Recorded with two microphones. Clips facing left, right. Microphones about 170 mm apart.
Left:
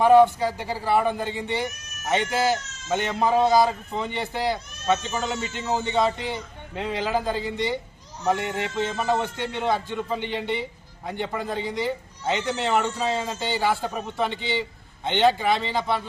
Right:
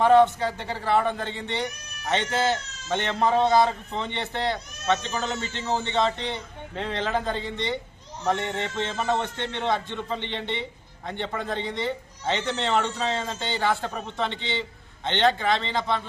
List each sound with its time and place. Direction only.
0.0 s a man's voice: 10° left (ahead or behind)